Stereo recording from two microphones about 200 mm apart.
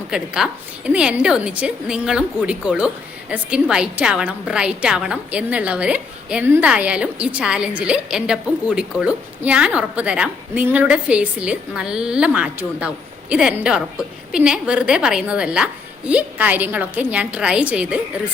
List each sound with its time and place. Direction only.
0.1 s a woman's voice: 5° right (ahead or behind)